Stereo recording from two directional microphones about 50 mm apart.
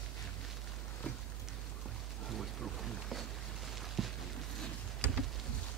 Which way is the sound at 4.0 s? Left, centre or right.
Centre.